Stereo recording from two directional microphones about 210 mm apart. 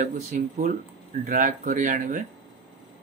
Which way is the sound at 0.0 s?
35° right (ahead or behind).